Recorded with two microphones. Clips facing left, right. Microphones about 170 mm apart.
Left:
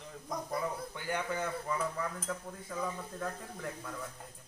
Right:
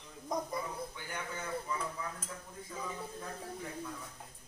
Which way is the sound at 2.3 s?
90° left.